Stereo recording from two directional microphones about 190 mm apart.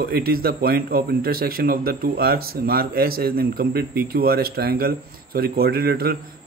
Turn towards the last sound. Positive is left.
turn(degrees=-55)  # may be behind; listen again after turning